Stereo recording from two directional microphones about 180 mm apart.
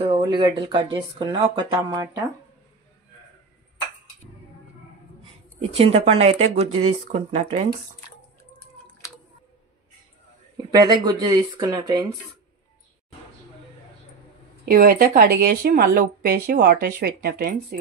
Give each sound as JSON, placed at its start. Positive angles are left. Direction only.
{"t": 0.0, "sound": "speech", "side_deg": -30}
{"t": 5.7, "sound": "speech", "side_deg": -35}
{"t": 10.7, "sound": "speech", "side_deg": -20}
{"t": 14.6, "sound": "speech", "side_deg": -50}